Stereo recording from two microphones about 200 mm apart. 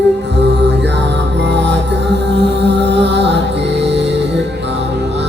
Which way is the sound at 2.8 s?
60° right (ahead or behind).